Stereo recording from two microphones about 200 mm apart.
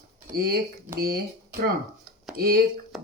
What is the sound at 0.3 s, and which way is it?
Speech, 50° right (ahead or behind).